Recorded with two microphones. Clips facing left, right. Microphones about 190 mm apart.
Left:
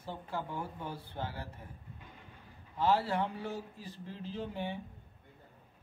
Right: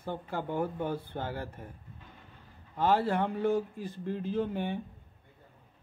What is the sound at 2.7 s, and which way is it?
A man's voice, 50° right (ahead or behind).